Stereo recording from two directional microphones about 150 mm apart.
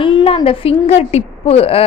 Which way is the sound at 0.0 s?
35° left (ahead or behind).